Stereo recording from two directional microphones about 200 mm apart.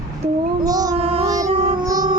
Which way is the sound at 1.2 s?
15° right (ahead or behind).